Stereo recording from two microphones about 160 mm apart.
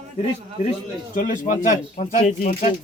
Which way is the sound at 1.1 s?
55° left (ahead or behind).